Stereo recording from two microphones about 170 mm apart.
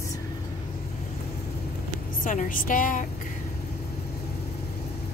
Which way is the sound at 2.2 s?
50° left (ahead or behind).